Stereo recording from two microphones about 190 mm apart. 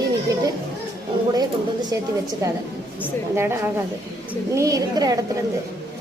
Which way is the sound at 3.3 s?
15° right (ahead or behind).